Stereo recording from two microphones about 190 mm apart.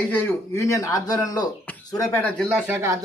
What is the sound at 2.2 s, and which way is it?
Speech, 10° left (ahead or behind).